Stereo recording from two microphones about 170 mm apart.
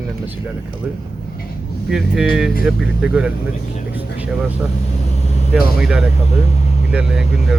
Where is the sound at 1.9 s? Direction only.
Centre (ahead or behind).